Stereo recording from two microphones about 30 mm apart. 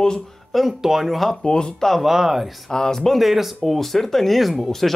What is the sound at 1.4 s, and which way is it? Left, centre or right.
Speech, left.